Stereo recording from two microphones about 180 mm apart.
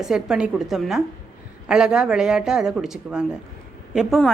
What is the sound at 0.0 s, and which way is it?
A woman's voice, 5° right (ahead or behind).